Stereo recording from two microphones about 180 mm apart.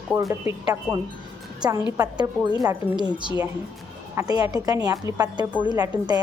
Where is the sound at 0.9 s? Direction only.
Centre (ahead or behind).